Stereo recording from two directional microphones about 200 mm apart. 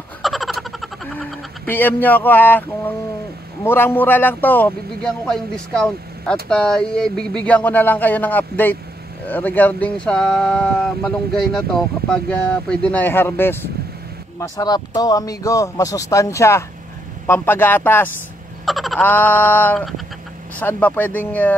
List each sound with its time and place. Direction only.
0.2 s a sound: centre (ahead or behind)
3.6 s a man's voice: 10° left (ahead or behind)
14.6 s a man's voice: 20° left (ahead or behind)